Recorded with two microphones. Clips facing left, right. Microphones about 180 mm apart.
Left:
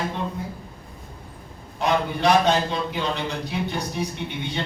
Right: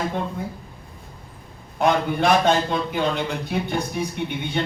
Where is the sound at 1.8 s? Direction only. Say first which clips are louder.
Right 3 dB; 55° right (ahead or behind).